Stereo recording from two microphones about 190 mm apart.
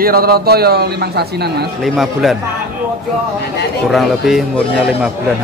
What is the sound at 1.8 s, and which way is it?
Speech, centre (ahead or behind).